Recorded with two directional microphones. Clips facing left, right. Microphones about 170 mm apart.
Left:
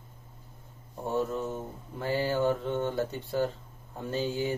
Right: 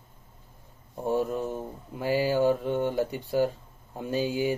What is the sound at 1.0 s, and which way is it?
Mantra, 15° right (ahead or behind).